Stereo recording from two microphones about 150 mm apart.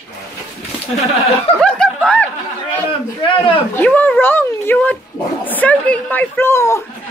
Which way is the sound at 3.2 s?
35° left (ahead or behind).